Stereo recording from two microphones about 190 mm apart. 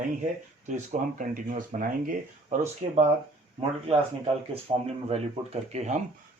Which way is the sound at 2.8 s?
30° right (ahead or behind).